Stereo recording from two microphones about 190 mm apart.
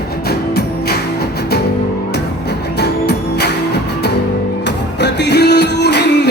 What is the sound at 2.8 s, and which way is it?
Music, 60° left (ahead or behind).